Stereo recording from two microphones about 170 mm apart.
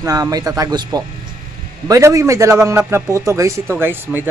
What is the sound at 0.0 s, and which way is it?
A man's voice, 20° right (ahead or behind).